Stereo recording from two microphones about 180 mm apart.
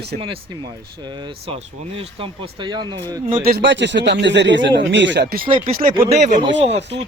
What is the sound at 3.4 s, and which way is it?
Speech, 70° right (ahead or behind).